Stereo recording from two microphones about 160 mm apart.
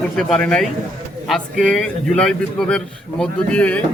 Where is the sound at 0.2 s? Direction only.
5° left (ahead or behind).